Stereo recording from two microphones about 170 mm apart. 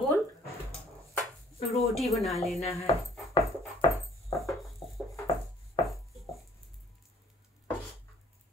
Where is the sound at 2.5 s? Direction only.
35° left (ahead or behind).